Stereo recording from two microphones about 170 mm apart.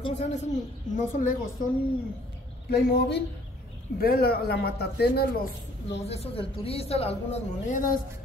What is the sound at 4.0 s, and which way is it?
A man's voice, 65° left (ahead or behind).